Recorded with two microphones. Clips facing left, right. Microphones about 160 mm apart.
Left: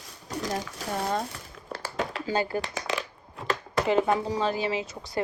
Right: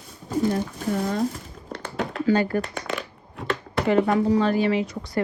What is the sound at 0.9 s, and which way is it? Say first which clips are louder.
Speech: right 4 dB; 65° right (ahead or behind).